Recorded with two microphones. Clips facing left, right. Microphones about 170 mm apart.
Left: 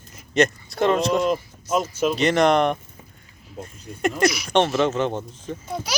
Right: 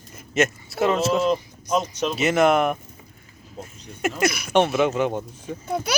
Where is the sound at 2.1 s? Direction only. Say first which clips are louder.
Even; 5° right (ahead or behind).